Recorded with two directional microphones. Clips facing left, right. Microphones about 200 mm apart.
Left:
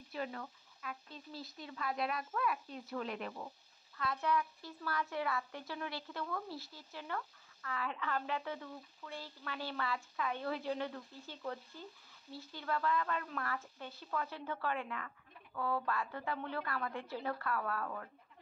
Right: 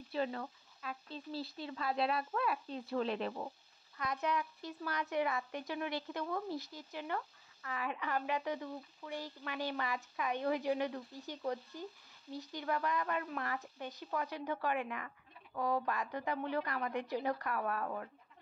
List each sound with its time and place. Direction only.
0.1 s speech: 30° right (ahead or behind)
4.0 s speech: 20° right (ahead or behind)